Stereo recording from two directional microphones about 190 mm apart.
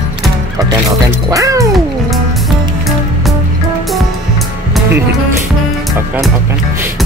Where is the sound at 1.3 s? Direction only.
15° right (ahead or behind).